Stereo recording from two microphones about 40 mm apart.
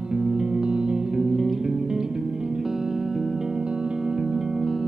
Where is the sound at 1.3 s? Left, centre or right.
Centre.